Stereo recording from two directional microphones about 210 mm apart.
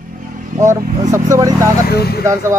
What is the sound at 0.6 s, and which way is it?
Speech, 15° right (ahead or behind).